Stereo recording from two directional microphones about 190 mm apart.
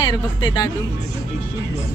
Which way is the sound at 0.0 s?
20° left (ahead or behind).